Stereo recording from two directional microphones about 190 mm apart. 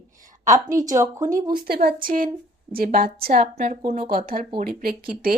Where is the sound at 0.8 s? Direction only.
15° right (ahead or behind).